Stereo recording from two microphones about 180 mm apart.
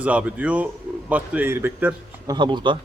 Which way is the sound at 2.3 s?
25° right (ahead or behind).